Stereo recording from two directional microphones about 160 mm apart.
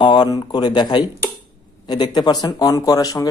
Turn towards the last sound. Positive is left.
turn(degrees=20)  # may be behind; listen again after turning